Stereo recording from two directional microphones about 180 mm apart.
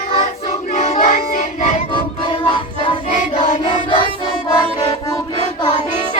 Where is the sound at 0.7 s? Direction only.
40° left (ahead or behind).